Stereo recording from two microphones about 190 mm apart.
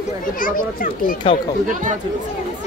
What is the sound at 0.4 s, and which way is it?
Speech, 45° left (ahead or behind).